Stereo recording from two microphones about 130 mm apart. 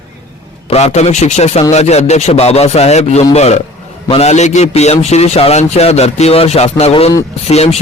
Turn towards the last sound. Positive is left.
turn(degrees=55)  # may be behind; listen again after turning